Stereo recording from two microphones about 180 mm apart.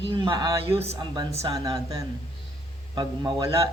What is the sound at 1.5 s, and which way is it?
A man's voice, 20° right (ahead or behind).